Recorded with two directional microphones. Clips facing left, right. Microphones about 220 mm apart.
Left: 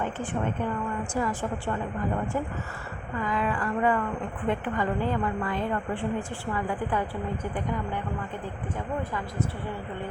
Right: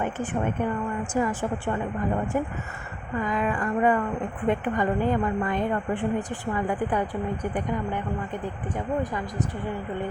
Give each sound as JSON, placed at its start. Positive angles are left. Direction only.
{"t": 1.2, "sound": "speech", "side_deg": -15}
{"t": 3.2, "sound": "a woman's voice", "side_deg": -20}
{"t": 9.0, "sound": "speech", "side_deg": -15}